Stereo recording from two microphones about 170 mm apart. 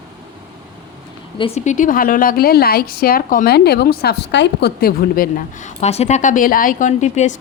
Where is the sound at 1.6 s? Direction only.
45° left (ahead or behind).